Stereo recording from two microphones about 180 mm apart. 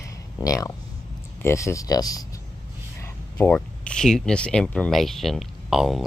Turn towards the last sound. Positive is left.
turn(degrees=0)  # may be behind; listen again after turning